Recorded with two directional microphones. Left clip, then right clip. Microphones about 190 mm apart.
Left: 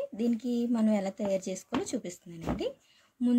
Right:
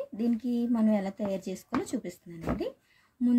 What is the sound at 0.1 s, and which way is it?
Speech, centre (ahead or behind).